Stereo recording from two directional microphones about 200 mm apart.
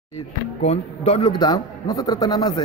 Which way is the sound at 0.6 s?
30° left (ahead or behind).